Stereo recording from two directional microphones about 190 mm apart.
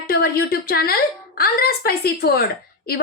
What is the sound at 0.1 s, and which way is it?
A woman's voice, 55° left (ahead or behind).